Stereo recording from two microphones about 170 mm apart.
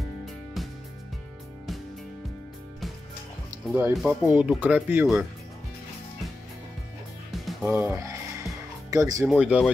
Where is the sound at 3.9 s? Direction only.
Centre (ahead or behind).